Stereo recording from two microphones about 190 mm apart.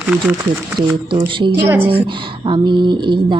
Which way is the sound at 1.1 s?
25° right (ahead or behind).